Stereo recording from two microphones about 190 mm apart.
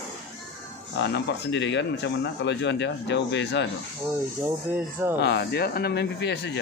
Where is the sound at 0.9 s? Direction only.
65° left (ahead or behind).